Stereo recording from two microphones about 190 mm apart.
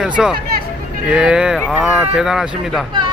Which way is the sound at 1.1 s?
5° right (ahead or behind).